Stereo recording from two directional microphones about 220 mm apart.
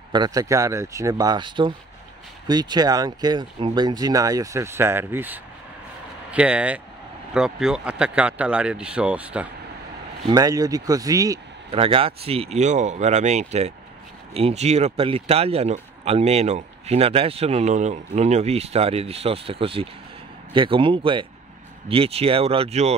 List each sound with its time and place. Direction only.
0.1 s speech: 20° right (ahead or behind)
10.2 s speech: 15° right (ahead or behind)